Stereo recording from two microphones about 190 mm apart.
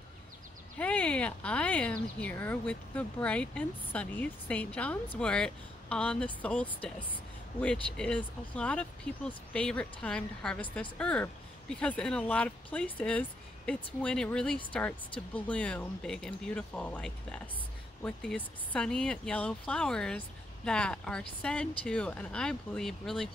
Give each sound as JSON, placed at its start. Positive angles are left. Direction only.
{"t": 0.7, "sound": "speech", "side_deg": 5}
{"t": 15.0, "sound": "speech", "side_deg": 25}
{"t": 15.4, "sound": "speech", "side_deg": 5}